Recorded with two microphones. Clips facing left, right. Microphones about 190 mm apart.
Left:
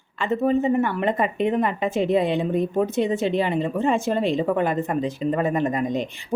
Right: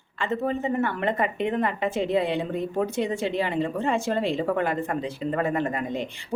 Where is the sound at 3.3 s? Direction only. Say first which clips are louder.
Left 3 dB; 15° left (ahead or behind).